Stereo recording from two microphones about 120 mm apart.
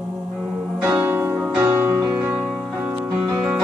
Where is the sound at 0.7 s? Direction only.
15° right (ahead or behind).